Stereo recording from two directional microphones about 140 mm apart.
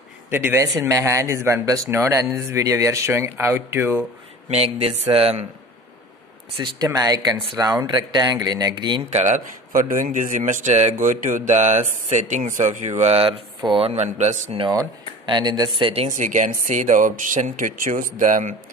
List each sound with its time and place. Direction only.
0.3 s speech: 15° right (ahead or behind)
5.1 s speech: 45° right (ahead or behind)
6.5 s speech: 35° right (ahead or behind)
9.1 s speech: 55° right (ahead or behind)
9.7 s speech: 75° right (ahead or behind); by 14.6 s 55° right (ahead or behind)
14.7 s speech: 30° right (ahead or behind)
16.1 s speech: 65° right (ahead or behind)